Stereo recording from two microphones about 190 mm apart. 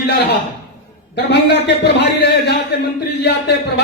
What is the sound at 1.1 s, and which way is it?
A man's voice, 65° left (ahead or behind).